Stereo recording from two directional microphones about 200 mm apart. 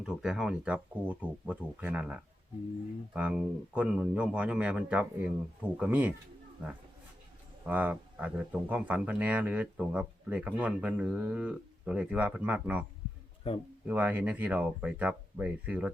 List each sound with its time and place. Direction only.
0.0 s speech: 5° right (ahead or behind)
13.5 s speech: 30° left (ahead or behind)
13.8 s speech: 10° right (ahead or behind)